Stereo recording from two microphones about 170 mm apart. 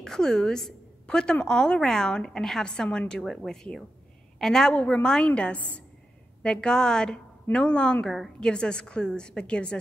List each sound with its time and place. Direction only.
0.0 s a woman's voice: 5° left (ahead or behind)